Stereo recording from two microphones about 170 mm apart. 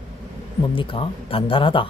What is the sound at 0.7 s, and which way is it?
Speech, 30° left (ahead or behind).